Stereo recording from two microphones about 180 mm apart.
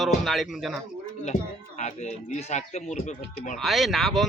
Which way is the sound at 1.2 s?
40° left (ahead or behind).